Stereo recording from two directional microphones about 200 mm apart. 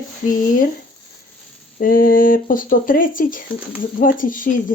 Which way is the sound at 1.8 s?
45° left (ahead or behind).